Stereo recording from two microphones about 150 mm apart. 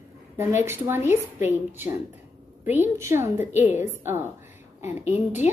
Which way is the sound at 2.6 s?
15° right (ahead or behind).